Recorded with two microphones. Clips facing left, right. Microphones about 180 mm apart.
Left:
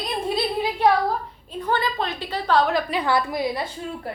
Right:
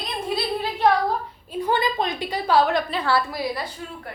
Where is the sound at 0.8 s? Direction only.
10° left (ahead or behind).